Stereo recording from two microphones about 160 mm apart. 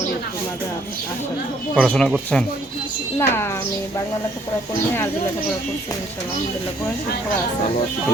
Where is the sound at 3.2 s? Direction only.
15° left (ahead or behind).